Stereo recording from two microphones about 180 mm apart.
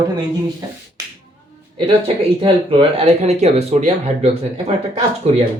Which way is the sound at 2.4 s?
30° right (ahead or behind).